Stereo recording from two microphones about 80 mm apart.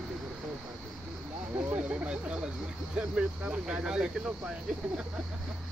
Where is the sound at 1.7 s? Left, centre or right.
Centre.